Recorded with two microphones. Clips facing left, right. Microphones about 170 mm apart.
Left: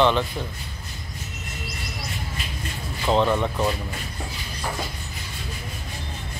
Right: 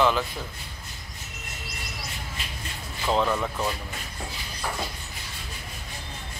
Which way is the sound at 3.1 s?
25° left (ahead or behind).